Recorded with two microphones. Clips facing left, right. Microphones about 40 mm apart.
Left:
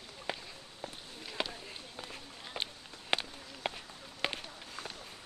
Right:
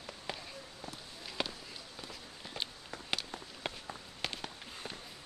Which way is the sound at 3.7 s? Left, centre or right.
Left.